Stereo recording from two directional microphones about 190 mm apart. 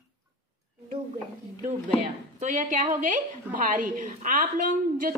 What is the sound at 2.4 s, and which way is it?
A woman's voice, 40° right (ahead or behind).